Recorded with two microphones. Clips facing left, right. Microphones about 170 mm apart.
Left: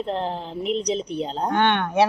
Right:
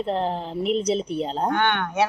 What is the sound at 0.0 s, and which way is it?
Speech, centre (ahead or behind).